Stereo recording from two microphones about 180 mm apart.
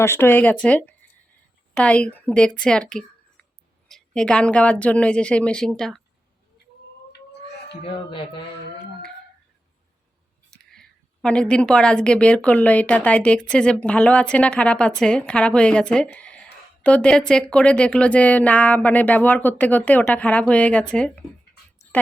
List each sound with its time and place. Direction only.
0.0 s a woman's voice: 15° left (ahead or behind)
7.9 s speech: 30° left (ahead or behind)
10.5 s a woman's voice: 5° left (ahead or behind)